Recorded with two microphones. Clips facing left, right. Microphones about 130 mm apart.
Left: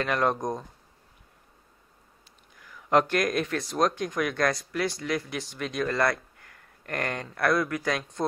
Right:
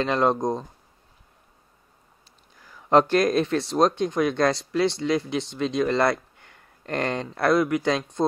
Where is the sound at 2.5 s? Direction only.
30° right (ahead or behind).